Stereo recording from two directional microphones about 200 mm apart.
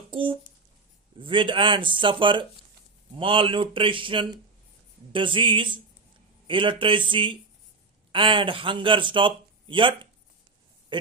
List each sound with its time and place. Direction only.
0.1 s speech: 25° right (ahead or behind)